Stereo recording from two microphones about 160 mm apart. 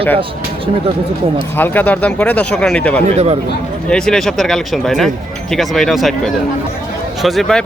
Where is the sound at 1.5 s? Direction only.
10° left (ahead or behind).